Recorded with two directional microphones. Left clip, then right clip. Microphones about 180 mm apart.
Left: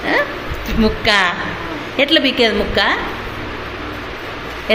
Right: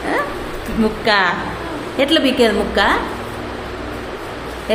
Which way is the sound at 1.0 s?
15° left (ahead or behind).